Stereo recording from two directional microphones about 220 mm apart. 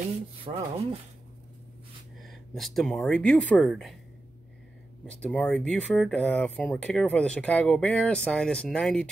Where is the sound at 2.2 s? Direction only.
Centre (ahead or behind).